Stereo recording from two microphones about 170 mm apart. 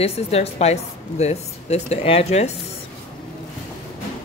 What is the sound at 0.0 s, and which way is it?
Speech, 35° left (ahead or behind).